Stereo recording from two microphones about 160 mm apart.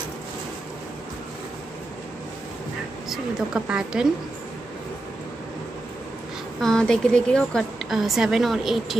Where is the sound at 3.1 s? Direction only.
5° right (ahead or behind).